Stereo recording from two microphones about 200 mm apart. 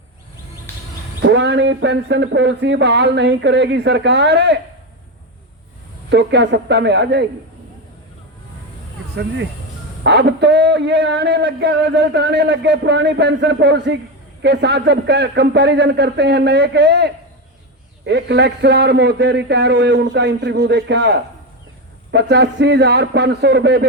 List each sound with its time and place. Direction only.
1.2 s a man's voice: 65° right (ahead or behind)
6.1 s a man's voice: 60° right (ahead or behind)
10.0 s a man's voice: 60° right (ahead or behind)